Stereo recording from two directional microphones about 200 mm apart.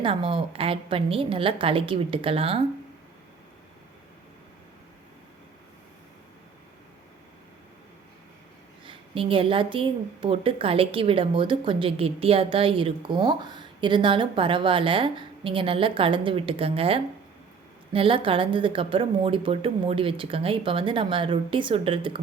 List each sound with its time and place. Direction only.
0.0 s a woman's voice: 25° right (ahead or behind)
8.9 s a woman's voice: 25° right (ahead or behind)